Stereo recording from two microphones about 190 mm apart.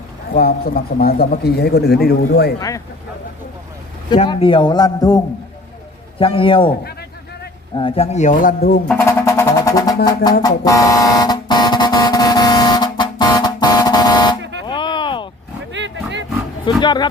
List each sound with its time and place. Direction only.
0.3 s a man's voice: 50° left (ahead or behind)
2.6 s speech: 15° left (ahead or behind)
4.3 s a man's voice: 25° left (ahead or behind)
7.8 s speech: 30° left (ahead or behind); by 8.8 s 50° left (ahead or behind)
8.9 s music: 15° left (ahead or behind)
10.4 s a sound: 20° left (ahead or behind)
15.7 s roaring cats: 70° right (ahead or behind)
16.8 s a man's voice: 25° left (ahead or behind)